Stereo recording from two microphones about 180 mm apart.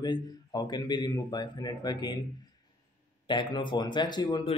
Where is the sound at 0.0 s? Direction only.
20° left (ahead or behind).